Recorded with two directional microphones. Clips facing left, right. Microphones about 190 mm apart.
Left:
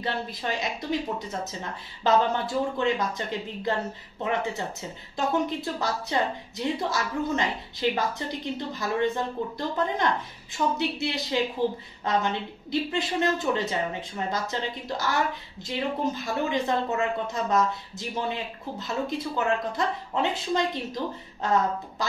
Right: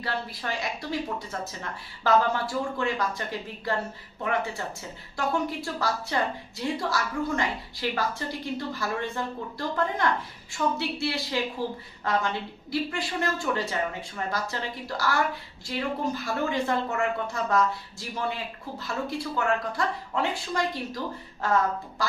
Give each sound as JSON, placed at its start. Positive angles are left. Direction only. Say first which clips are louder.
{"t": 0.0, "sound": "speech", "louder": "left 2 dB", "side_deg": 20}